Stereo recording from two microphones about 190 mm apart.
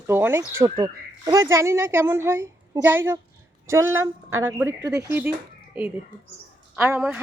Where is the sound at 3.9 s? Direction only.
90° right.